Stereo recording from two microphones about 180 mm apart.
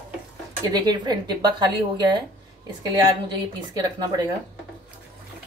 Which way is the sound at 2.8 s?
25° right (ahead or behind).